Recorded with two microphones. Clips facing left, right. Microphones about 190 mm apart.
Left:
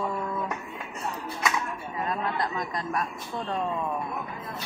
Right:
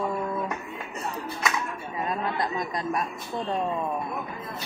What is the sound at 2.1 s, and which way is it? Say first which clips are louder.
Speech: right 1 dB; 20° right (ahead or behind).